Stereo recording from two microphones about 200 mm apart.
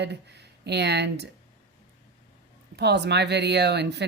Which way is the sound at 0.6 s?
55° right (ahead or behind).